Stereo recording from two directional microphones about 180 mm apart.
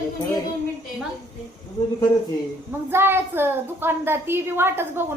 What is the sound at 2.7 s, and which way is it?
A woman's voice, 10° right (ahead or behind).